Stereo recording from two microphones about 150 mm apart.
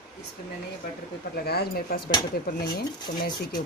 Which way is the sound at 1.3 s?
90° left.